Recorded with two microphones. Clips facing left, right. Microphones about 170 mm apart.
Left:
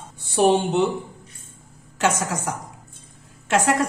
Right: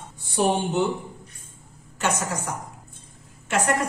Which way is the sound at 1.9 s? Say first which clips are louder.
Left 4 dB; 90° left.